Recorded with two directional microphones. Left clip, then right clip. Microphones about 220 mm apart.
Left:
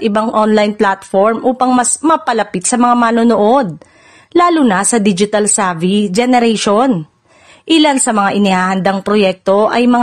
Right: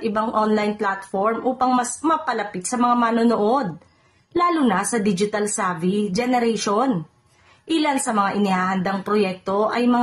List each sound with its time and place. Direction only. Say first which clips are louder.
0.1 s speech: left 7 dB; 35° left (ahead or behind)